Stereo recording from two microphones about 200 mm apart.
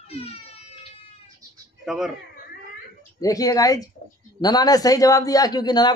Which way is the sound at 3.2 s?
15° left (ahead or behind).